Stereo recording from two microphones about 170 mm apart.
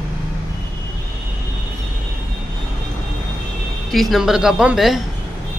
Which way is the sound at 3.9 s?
Centre (ahead or behind).